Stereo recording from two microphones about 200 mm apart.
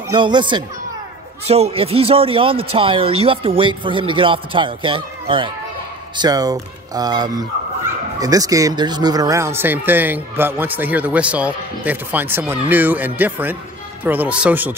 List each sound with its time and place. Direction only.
0.1 s speech: 25° right (ahead or behind)